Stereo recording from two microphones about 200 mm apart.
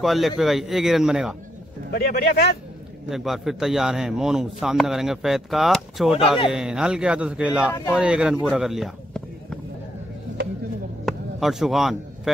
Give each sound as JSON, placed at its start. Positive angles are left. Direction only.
{"t": 0.0, "sound": "a man's voice", "side_deg": 0}
{"t": 1.9, "sound": "speech", "side_deg": 50}
{"t": 3.1, "sound": "a man's voice", "side_deg": 0}
{"t": 11.1, "sound": "a sound", "side_deg": 0}